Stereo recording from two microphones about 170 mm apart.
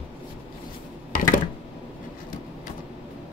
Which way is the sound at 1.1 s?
50° left (ahead or behind).